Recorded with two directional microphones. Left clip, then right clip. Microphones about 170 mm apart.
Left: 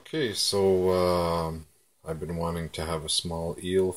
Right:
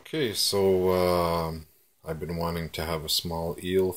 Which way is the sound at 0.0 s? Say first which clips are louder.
Right 1 dB; centre (ahead or behind).